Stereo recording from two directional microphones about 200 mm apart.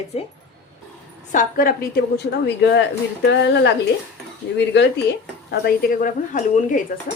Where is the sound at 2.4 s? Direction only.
60° left (ahead or behind).